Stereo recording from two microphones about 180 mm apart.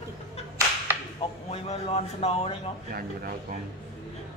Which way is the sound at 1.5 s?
35° left (ahead or behind).